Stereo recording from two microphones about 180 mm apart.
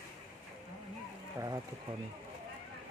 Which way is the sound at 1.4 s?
20° right (ahead or behind).